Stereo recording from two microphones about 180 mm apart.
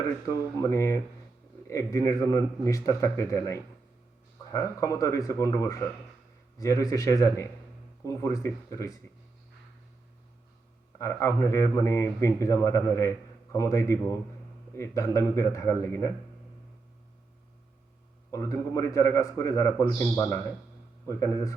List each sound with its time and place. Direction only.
0.3 s speech: 15° left (ahead or behind)
10.9 s speech: 15° left (ahead or behind)
18.3 s speech: 15° left (ahead or behind)